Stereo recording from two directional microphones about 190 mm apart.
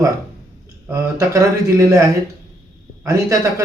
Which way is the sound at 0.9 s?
15° right (ahead or behind).